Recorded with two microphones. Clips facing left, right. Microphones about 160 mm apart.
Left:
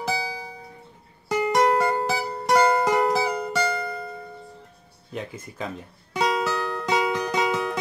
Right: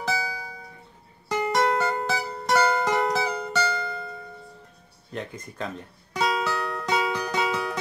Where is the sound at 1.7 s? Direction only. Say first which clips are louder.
Left 3 dB; 30° left (ahead or behind).